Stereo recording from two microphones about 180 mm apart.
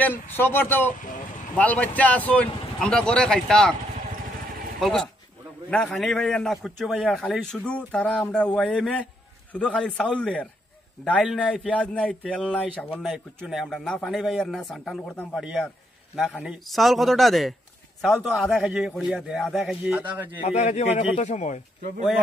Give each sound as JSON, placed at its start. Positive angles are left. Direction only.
{"t": 0.0, "sound": "a man's voice", "side_deg": 10}
{"t": 4.7, "sound": "a man's voice", "side_deg": 0}
{"t": 20.4, "sound": "speech", "side_deg": 40}